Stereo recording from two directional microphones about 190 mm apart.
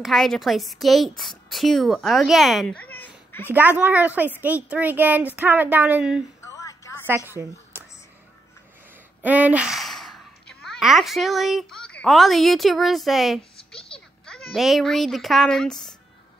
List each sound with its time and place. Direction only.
0.0 s speech: centre (ahead or behind)
3.4 s a child's voice: 10° right (ahead or behind)
6.4 s a sound: 15° left (ahead or behind)
7.1 s a woman's voice: 10° right (ahead or behind)
9.2 s a child's voice: 10° right (ahead or behind)